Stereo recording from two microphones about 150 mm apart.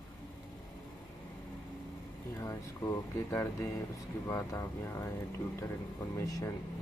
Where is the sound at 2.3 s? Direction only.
20° left (ahead or behind).